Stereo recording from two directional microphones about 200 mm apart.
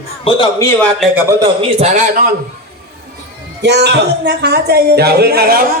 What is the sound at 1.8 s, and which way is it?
Speech, 35° right (ahead or behind).